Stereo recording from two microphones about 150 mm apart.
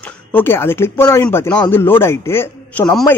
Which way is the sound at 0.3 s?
15° left (ahead or behind).